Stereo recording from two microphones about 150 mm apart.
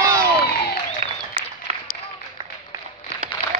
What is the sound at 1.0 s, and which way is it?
Applause, 45° right (ahead or behind).